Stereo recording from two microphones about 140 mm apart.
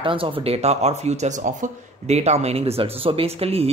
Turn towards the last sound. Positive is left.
turn(degrees=-45)  # may be behind; listen again after turning